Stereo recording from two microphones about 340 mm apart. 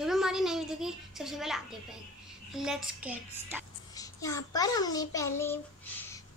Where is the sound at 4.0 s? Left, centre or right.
Centre.